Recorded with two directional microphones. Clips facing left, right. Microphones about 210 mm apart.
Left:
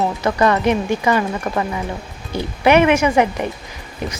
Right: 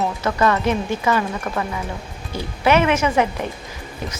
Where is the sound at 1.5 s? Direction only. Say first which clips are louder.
Left 4 dB; 35° left (ahead or behind).